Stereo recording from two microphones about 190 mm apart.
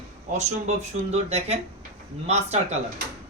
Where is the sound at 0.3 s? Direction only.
35° right (ahead or behind).